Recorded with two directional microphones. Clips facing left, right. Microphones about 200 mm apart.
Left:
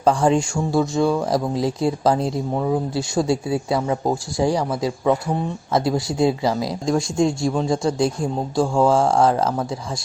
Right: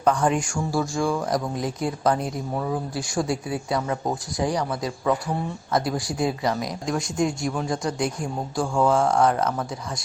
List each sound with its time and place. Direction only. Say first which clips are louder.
0.0 s speech: left 4 dB; 30° left (ahead or behind)